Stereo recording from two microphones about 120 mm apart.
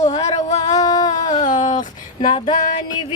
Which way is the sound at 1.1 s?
90° left.